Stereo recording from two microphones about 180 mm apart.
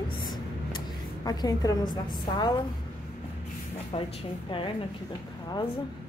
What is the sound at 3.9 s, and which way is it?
Speech, 30° left (ahead or behind).